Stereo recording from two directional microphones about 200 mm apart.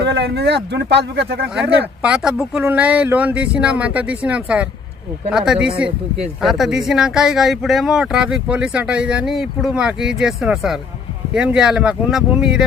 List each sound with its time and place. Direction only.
0.0 s speech: 55° right (ahead or behind)
1.5 s speech: 5° right (ahead or behind)